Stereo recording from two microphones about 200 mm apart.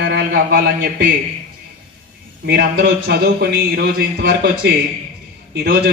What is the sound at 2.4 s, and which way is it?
A man's voice, 55° right (ahead or behind).